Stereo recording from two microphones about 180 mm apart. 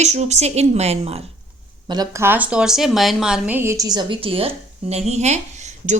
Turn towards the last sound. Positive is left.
turn(degrees=-40)  # may be behind; listen again after turning